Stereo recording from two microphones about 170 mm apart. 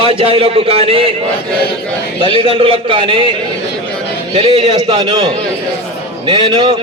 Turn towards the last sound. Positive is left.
turn(degrees=-25)  # may be behind; listen again after turning